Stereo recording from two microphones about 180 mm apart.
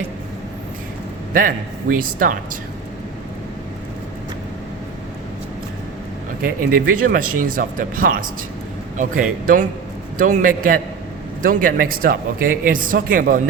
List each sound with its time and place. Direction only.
1.3 s speech: 50° right (ahead or behind)
6.4 s speech: 50° right (ahead or behind)